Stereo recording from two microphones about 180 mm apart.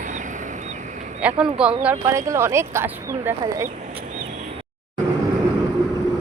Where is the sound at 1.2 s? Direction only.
5° right (ahead or behind).